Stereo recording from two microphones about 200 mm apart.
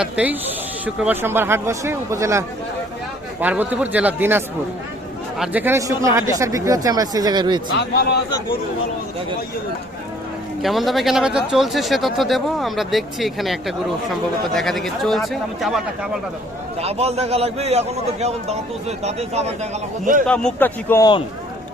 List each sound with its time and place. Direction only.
0.0 s speech: 5° right (ahead or behind)
3.4 s speech: 10° right (ahead or behind)
7.7 s a man's voice: 60° left (ahead or behind)
10.6 s speech: centre (ahead or behind)
16.8 s a man's voice: 30° right (ahead or behind)
20.2 s speech: 5° left (ahead or behind)